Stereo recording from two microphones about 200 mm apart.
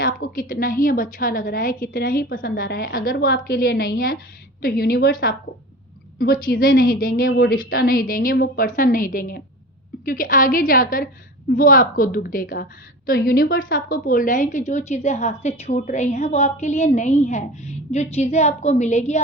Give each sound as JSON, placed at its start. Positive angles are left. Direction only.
{"t": 0.0, "sound": "a woman's voice", "side_deg": 45}